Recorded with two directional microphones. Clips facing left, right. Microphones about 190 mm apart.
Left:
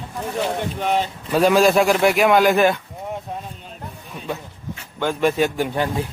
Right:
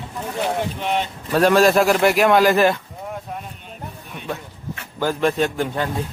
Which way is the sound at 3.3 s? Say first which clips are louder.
Left 1 dB; 25° left (ahead or behind).